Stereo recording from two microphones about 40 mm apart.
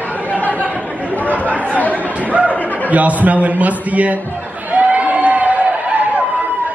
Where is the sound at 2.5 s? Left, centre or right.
Left.